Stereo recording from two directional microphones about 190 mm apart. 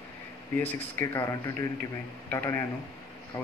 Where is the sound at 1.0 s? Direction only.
15° left (ahead or behind).